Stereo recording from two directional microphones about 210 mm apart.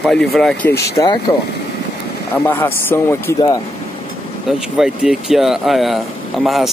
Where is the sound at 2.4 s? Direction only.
10° left (ahead or behind).